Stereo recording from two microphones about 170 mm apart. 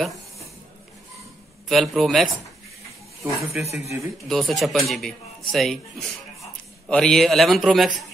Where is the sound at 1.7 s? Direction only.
Centre (ahead or behind).